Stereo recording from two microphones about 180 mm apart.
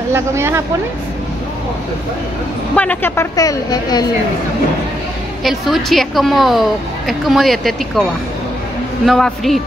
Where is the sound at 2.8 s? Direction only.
10° left (ahead or behind).